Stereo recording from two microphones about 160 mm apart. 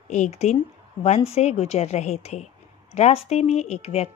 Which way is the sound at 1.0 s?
40° left (ahead or behind).